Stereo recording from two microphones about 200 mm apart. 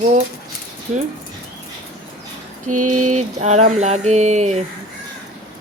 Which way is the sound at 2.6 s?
40° right (ahead or behind).